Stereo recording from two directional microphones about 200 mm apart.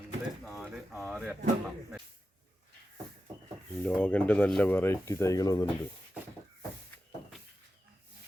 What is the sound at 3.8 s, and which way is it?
Speech, 5° left (ahead or behind).